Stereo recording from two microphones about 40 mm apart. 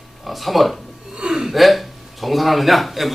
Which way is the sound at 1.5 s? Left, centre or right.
Centre.